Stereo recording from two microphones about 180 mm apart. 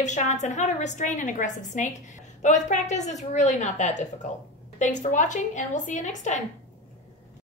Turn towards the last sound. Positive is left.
turn(degrees=40)  # may be behind; listen again after turning